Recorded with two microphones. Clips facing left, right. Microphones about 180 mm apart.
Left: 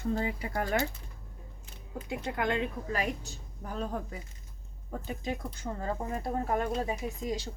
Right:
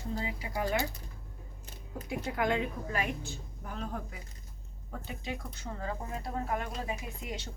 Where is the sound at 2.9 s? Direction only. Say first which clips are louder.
Left 2 dB; 35° left (ahead or behind).